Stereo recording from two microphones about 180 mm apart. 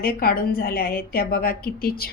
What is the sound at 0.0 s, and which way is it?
A woman's voice, 55° left (ahead or behind).